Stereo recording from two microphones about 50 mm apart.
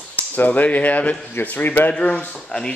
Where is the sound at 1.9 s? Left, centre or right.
Left.